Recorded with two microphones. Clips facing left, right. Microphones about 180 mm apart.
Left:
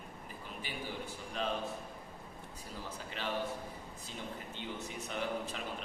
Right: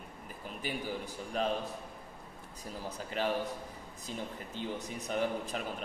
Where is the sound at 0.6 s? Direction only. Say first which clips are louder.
Right 5 dB; 40° right (ahead or behind).